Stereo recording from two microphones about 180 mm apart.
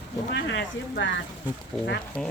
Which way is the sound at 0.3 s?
70° left (ahead or behind).